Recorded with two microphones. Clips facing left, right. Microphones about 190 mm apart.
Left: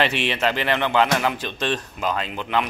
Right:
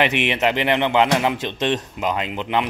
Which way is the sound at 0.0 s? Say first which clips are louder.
Right 2 dB; 20° right (ahead or behind).